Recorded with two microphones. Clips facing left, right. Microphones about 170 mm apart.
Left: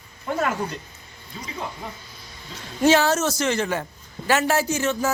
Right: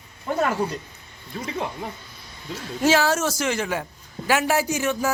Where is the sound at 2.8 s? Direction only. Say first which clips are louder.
Left 2 dB; 5° right (ahead or behind).